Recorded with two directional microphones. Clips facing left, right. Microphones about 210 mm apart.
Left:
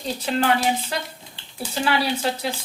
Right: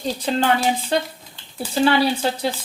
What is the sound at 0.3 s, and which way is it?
Sizzle, 30° right (ahead or behind).